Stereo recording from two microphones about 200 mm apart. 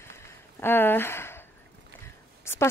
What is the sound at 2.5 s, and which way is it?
Speech, 15° left (ahead or behind).